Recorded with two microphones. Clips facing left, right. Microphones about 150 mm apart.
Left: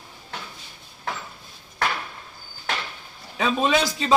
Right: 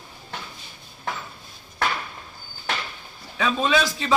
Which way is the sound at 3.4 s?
30° left (ahead or behind).